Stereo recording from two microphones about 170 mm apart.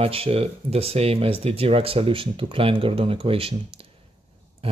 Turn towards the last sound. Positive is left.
turn(degrees=-35)  # may be behind; listen again after turning